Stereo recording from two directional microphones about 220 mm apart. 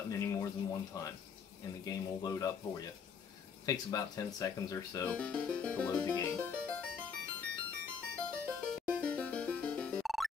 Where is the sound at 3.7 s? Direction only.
15° left (ahead or behind).